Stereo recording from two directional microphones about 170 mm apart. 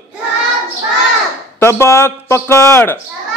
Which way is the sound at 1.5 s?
15° left (ahead or behind).